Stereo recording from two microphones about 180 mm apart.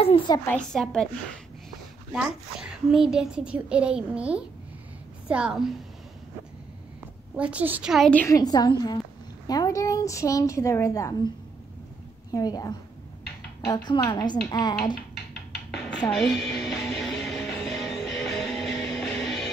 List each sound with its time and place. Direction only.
0.0 s speech: 30° left (ahead or behind)
0.5 s a child's voice: 5° left (ahead or behind)
2.1 s a child's voice: 5° right (ahead or behind)
7.3 s a child's voice: 5° right (ahead or behind); by 8.4 s 10° left (ahead or behind)
8.4 s a woman's voice: 20° left (ahead or behind)
12.3 s a woman's voice: 20° left (ahead or behind)
13.8 s a woman's voice: 25° left (ahead or behind)
16.0 s a child's voice: 5° left (ahead or behind)
16.8 s music: centre (ahead or behind)